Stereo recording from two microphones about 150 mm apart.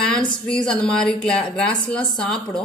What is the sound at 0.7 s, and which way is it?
A woman's voice, 5° left (ahead or behind).